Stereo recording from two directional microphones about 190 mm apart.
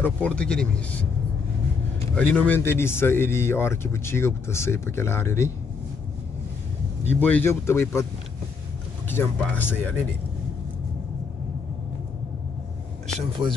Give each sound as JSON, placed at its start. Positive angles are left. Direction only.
{"t": 0.0, "sound": "speech", "side_deg": 5}
{"t": 2.1, "sound": "speech", "side_deg": 5}
{"t": 7.1, "sound": "speech", "side_deg": 10}
{"t": 9.1, "sound": "speech", "side_deg": 10}